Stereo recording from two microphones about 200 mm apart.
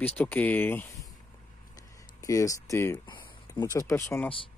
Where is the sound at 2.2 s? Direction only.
15° left (ahead or behind).